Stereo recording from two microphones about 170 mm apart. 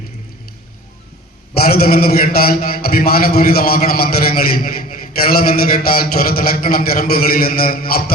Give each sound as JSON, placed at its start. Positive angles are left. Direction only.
{"t": 1.6, "sound": "a man's voice", "side_deg": 65}